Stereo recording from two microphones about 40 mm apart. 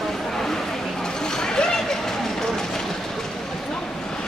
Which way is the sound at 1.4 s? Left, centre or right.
Centre.